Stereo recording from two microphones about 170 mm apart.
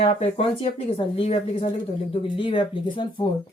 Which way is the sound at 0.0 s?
35° left (ahead or behind).